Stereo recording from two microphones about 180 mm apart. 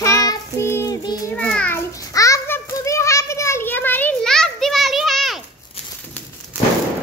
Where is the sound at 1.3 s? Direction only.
5° left (ahead or behind).